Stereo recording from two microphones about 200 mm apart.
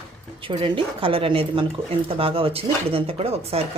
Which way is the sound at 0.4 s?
25° right (ahead or behind).